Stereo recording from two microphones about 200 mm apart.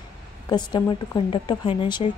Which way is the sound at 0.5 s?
20° left (ahead or behind).